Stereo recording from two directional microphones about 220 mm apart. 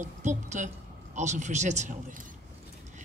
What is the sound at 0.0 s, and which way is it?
Speech, 35° right (ahead or behind).